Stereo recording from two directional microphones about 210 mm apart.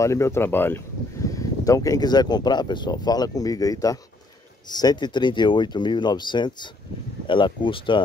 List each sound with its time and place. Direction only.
0.0 s speech: 15° left (ahead or behind)